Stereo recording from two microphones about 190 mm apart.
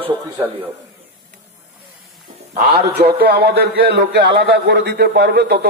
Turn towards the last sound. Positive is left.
turn(degrees=-55)  # may be behind; listen again after turning